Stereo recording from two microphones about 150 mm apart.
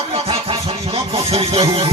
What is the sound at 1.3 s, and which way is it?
Music, 40° right (ahead or behind).